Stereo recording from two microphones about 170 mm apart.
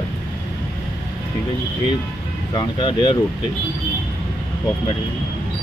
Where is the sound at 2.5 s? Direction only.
25° left (ahead or behind).